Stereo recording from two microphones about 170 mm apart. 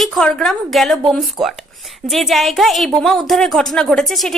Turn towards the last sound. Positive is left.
turn(degrees=0)  # may be behind; listen again after turning